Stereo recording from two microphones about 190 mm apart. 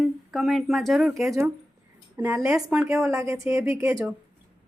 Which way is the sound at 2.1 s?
15° right (ahead or behind).